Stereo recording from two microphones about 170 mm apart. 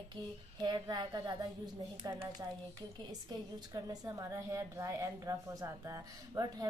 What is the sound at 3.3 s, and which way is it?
A woman's voice, 20° right (ahead or behind).